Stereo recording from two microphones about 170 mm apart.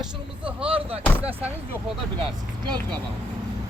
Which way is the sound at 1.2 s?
10° right (ahead or behind).